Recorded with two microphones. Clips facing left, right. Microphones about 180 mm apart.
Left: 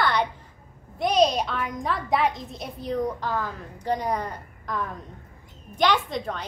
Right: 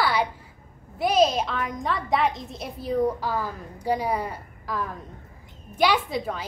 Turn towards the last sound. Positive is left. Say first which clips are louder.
# even
turn(degrees=-5)  # may be behind; listen again after turning